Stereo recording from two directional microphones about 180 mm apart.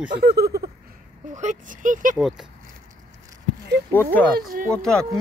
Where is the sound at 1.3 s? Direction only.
45° right (ahead or behind).